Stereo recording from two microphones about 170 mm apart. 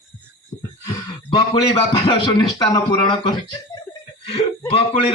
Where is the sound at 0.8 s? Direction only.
25° left (ahead or behind).